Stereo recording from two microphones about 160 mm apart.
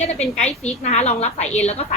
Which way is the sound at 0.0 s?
40° left (ahead or behind).